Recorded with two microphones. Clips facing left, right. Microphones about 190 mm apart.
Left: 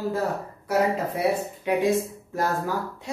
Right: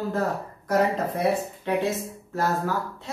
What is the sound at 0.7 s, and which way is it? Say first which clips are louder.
Speech: even; 10° left (ahead or behind).